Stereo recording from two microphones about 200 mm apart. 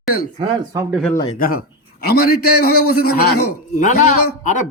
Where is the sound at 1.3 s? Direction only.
45° left (ahead or behind).